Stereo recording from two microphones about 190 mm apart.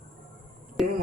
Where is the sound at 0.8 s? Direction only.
Centre (ahead or behind).